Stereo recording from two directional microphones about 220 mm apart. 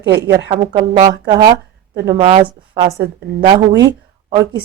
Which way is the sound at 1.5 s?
45° right (ahead or behind).